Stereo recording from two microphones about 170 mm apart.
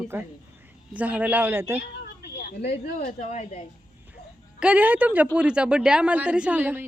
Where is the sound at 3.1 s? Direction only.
45° left (ahead or behind).